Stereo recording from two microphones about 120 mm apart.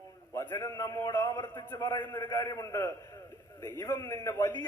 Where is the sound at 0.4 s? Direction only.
25° left (ahead or behind).